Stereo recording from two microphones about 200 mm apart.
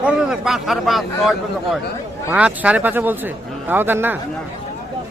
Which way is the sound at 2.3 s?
5° right (ahead or behind).